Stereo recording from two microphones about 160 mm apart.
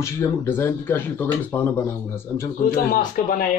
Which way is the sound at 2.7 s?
60° left (ahead or behind).